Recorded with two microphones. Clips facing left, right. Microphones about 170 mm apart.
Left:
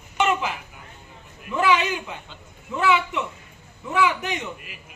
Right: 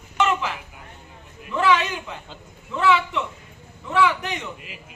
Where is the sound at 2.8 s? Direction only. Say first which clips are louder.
Right 1 dB; 5° left (ahead or behind).